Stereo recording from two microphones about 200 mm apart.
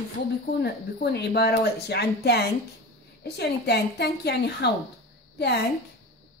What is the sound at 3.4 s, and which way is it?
A woman's voice, 55° left (ahead or behind).